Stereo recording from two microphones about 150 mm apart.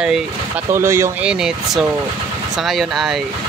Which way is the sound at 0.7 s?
20° right (ahead or behind).